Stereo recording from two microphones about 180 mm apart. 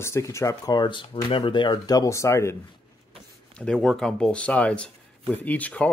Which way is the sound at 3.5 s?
5° left (ahead or behind).